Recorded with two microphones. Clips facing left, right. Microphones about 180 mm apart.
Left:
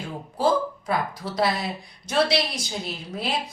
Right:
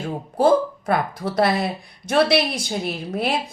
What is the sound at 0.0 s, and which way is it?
A woman's voice, 55° right (ahead or behind).